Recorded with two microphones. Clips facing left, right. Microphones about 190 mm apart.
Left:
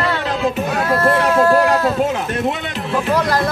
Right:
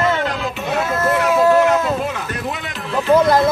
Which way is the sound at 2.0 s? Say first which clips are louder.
Left 6 dB; 30° left (ahead or behind).